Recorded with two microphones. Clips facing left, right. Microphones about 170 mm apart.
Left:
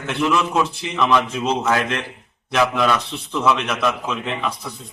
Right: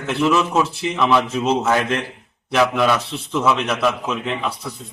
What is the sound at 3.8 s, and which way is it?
Speech, 5° right (ahead or behind).